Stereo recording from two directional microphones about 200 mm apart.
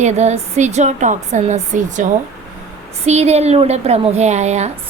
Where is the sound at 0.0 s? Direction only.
35° right (ahead or behind).